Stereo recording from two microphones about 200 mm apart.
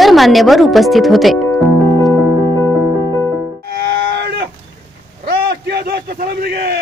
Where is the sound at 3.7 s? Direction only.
50° right (ahead or behind).